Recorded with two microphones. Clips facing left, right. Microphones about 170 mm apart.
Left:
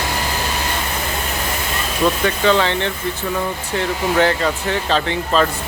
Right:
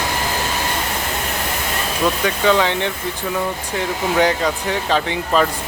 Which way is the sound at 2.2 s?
10° right (ahead or behind).